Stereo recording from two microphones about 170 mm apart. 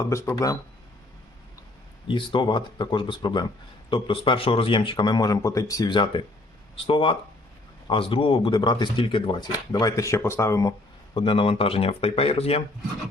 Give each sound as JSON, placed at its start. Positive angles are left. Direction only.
{"t": 0.0, "sound": "speech", "side_deg": 15}
{"t": 2.0, "sound": "speech", "side_deg": 30}